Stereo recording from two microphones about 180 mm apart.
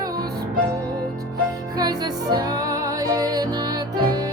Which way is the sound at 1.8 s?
20° right (ahead or behind).